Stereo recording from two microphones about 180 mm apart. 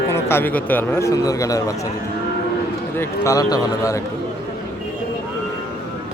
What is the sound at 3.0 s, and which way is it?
A man's voice, 15° left (ahead or behind).